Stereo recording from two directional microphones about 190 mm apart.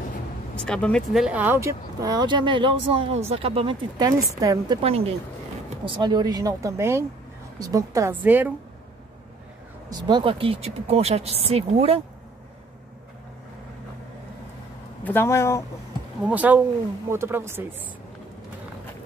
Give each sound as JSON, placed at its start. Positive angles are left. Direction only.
{"t": 0.6, "sound": "speech", "side_deg": 5}
{"t": 4.0, "sound": "speech", "side_deg": -20}
{"t": 4.8, "sound": "a woman's voice", "side_deg": -30}
{"t": 9.8, "sound": "speech", "side_deg": -20}
{"t": 15.0, "sound": "speech", "side_deg": 10}
{"t": 16.3, "sound": "a woman's voice", "side_deg": -10}